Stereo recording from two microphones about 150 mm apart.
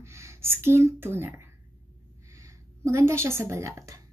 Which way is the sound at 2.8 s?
20° right (ahead or behind).